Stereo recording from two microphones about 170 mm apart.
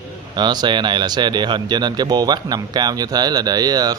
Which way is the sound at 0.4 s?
25° right (ahead or behind).